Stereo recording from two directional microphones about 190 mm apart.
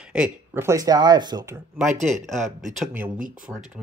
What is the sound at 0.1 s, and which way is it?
Speech, 10° right (ahead or behind).